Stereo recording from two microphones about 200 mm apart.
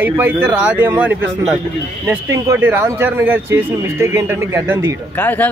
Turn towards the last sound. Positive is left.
turn(degrees=10)  # may be behind; listen again after turning